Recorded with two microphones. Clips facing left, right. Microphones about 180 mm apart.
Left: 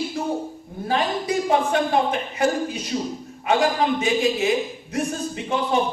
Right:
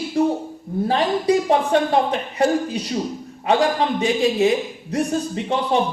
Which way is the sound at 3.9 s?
35° right (ahead or behind).